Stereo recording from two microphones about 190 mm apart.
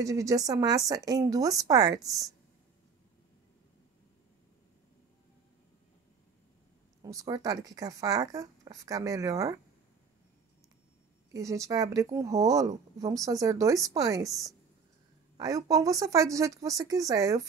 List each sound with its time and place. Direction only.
0.0 s speech: 15° right (ahead or behind)
7.0 s speech: 15° right (ahead or behind)
11.3 s speech: 15° right (ahead or behind)